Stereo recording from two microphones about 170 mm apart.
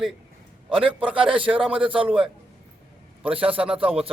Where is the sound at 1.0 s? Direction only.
5° right (ahead or behind).